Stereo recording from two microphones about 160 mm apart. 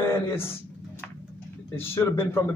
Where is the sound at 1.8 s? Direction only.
15° left (ahead or behind).